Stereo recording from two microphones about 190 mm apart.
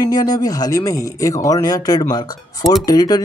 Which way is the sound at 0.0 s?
20° left (ahead or behind).